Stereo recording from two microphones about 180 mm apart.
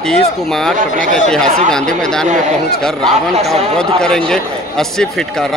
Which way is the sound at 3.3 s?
35° right (ahead or behind).